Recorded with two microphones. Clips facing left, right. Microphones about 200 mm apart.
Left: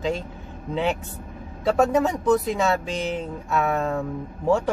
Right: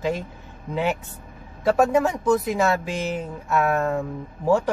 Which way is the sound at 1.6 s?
Centre (ahead or behind).